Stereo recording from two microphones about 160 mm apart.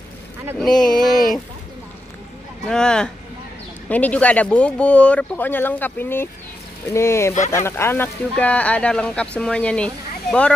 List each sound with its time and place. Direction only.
0.6 s speech: 5° left (ahead or behind)
2.7 s speech: 5° left (ahead or behind)
7.3 s speech: 50° left (ahead or behind)
7.6 s speech: 15° left (ahead or behind)